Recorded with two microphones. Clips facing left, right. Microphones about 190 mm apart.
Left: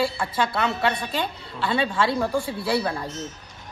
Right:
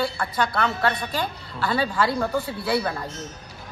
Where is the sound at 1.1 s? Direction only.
25° left (ahead or behind).